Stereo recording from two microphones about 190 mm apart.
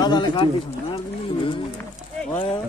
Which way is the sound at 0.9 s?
25° left (ahead or behind).